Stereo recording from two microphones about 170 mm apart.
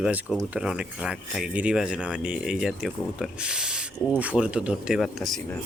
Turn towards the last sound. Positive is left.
turn(degrees=0)  # may be behind; listen again after turning